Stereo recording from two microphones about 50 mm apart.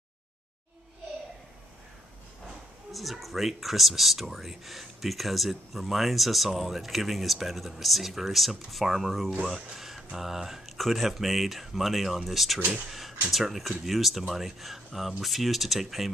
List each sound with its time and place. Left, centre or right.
2.9 s speech: centre
12.5 s speech: right
13.3 s speech: centre